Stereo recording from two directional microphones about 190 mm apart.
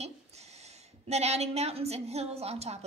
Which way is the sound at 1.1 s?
35° right (ahead or behind).